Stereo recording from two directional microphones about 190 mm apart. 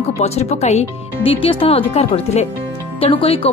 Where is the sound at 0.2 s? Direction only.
35° left (ahead or behind).